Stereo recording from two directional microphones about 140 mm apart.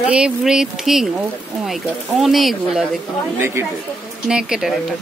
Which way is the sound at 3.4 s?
15° right (ahead or behind).